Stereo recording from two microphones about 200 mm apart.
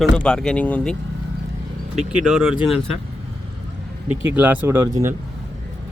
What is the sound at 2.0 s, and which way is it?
Speech, 5° right (ahead or behind).